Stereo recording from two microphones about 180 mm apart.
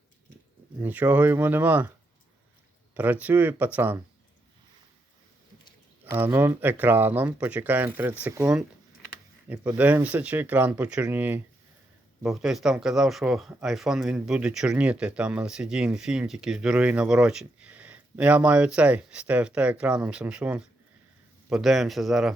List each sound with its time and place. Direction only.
0.8 s speech: 10° right (ahead or behind)
2.9 s speech: 10° right (ahead or behind)
6.1 s speech: 10° right (ahead or behind)